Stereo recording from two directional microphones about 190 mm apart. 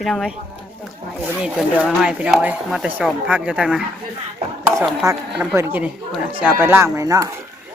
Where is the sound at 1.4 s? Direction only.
5° right (ahead or behind).